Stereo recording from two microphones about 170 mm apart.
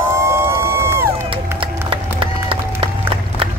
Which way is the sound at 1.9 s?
30° right (ahead or behind).